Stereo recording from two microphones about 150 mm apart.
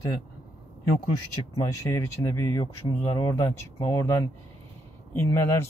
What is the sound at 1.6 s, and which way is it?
Speech, 20° left (ahead or behind).